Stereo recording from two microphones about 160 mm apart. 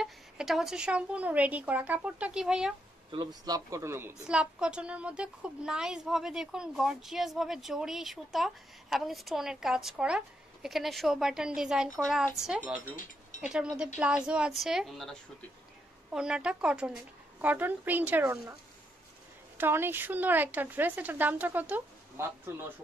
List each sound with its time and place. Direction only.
0.0 s a woman's voice: 5° right (ahead or behind)
3.1 s speech: 25° right (ahead or behind)
4.3 s a woman's voice: 5° right (ahead or behind)
12.9 s speech: 55° left (ahead or behind)
13.5 s a woman's voice: 5° right (ahead or behind)